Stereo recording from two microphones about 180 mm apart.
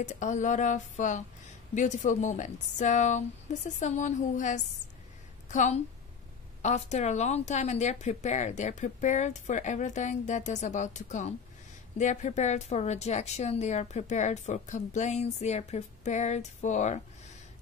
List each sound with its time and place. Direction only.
0.0 s a woman's voice: 40° left (ahead or behind)